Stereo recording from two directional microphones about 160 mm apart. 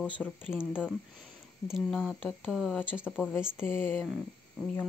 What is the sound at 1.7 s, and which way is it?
Speech, centre (ahead or behind).